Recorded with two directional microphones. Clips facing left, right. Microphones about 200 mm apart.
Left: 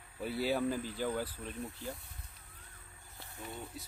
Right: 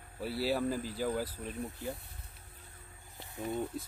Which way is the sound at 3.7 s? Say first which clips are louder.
Right 8 dB; 50° right (ahead or behind).